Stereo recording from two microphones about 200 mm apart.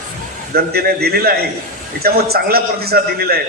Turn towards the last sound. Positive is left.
turn(degrees=-50)  # may be behind; listen again after turning